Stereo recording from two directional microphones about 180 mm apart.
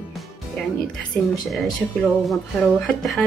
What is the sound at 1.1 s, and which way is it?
Speech, centre (ahead or behind).